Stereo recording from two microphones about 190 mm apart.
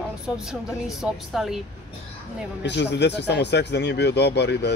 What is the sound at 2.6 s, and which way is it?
Speech, 65° left (ahead or behind).